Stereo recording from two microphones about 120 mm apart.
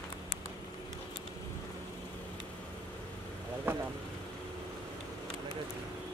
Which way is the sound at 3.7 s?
20° right (ahead or behind).